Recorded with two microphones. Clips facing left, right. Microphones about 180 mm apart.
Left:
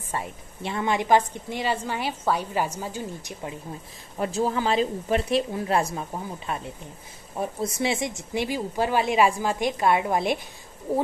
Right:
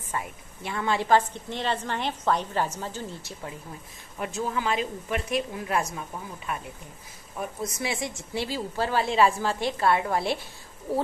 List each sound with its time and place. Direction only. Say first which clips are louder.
0.1 s a woman's voice: left 2 dB; 25° left (ahead or behind)
4.2 s a woman's voice: left 5 dB; 35° left (ahead or behind); by 10.4 s 20° left (ahead or behind)